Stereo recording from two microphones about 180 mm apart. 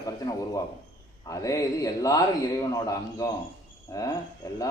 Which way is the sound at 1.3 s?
20° left (ahead or behind).